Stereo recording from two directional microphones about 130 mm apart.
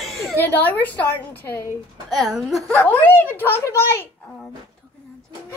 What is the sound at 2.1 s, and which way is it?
Speech, centre (ahead or behind).